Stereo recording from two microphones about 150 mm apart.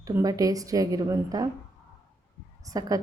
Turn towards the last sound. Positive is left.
turn(degrees=-25)  # may be behind; listen again after turning